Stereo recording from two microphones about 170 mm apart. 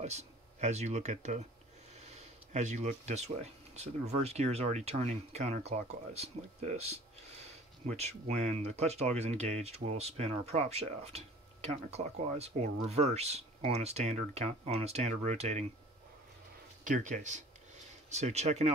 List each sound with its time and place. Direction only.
0.0 s speech: 40° right (ahead or behind)
2.0 s a sound: 40° right (ahead or behind)
3.7 s speech: 40° right (ahead or behind)
16.8 s speech: 50° right (ahead or behind)